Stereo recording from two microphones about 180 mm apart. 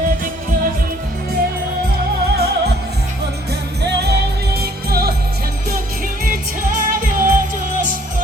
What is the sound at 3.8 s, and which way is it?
Music, 65° right (ahead or behind).